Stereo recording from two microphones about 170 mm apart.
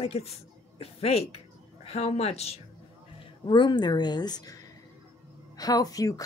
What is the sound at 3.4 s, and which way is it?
Speech, 25° left (ahead or behind).